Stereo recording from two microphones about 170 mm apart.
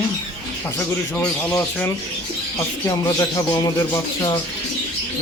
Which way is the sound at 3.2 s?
25° left (ahead or behind).